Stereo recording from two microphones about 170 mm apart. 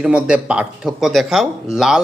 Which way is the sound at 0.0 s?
5° right (ahead or behind).